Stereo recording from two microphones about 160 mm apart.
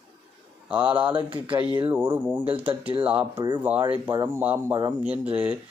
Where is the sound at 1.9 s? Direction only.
10° right (ahead or behind).